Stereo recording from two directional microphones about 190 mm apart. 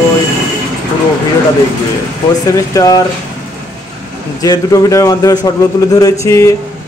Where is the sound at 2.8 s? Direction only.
20° left (ahead or behind).